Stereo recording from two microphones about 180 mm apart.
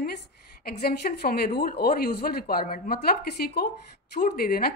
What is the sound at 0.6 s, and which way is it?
Speech, 60° left (ahead or behind).